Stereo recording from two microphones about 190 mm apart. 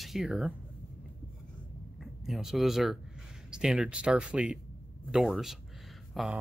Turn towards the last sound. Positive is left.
turn(degrees=0)  # may be behind; listen again after turning